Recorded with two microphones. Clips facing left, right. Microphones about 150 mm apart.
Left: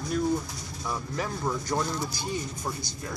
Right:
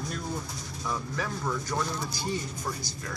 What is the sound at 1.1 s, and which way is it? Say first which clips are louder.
Speech: left 5 dB; 25° left (ahead or behind).